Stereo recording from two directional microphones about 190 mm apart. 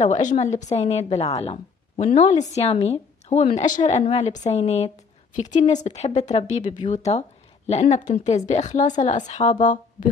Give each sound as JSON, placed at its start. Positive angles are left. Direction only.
{"t": 0.0, "sound": "a woman's voice", "side_deg": 40}